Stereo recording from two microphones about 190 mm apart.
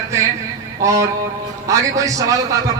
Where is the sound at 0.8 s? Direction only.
15° right (ahead or behind).